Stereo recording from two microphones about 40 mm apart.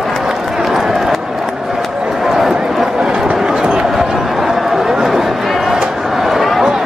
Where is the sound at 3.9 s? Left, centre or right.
Centre.